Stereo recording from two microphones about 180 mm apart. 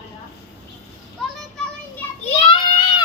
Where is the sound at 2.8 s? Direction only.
25° left (ahead or behind).